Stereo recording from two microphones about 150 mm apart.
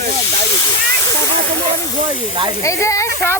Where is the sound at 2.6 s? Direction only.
20° left (ahead or behind).